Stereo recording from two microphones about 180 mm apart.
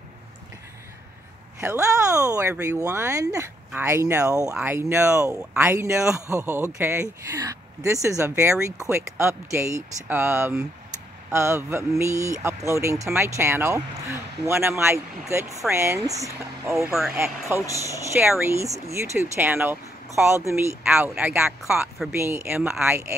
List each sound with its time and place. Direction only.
1.6 s speech: 15° right (ahead or behind)
16.7 s speech: centre (ahead or behind)
17.1 s speech: 15° right (ahead or behind)
20.8 s speech: 5° right (ahead or behind)
22.1 s speech: 15° right (ahead or behind)